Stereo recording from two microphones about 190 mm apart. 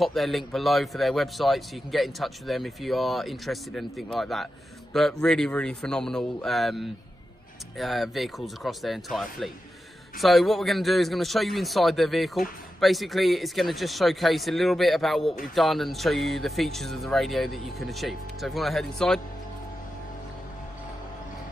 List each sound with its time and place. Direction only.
0.0 s a man's voice: centre (ahead or behind)